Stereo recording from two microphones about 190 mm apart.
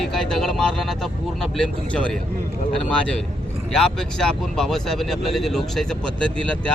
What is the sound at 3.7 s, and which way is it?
Speech, centre (ahead or behind).